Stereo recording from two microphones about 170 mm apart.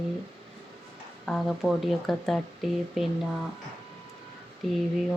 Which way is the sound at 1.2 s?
Centre (ahead or behind).